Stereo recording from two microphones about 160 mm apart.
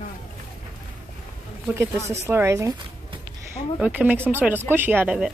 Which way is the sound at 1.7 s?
15° right (ahead or behind).